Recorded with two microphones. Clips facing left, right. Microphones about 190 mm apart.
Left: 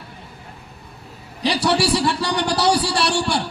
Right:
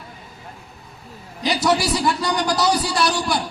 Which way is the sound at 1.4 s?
30° left (ahead or behind).